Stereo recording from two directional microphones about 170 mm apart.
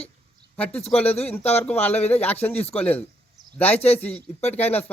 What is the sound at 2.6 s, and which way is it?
Speech, 35° left (ahead or behind).